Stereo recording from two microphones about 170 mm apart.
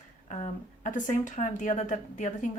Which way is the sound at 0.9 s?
50° left (ahead or behind).